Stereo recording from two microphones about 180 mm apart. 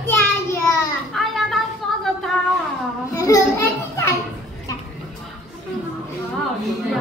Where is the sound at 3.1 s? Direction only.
20° left (ahead or behind).